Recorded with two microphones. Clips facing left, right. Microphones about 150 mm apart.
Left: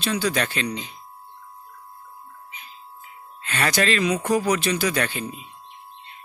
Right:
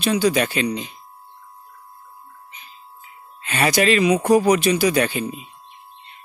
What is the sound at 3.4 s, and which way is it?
Speech, 15° right (ahead or behind).